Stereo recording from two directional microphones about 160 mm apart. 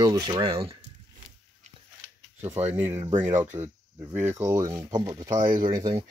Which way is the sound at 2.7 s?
15° right (ahead or behind).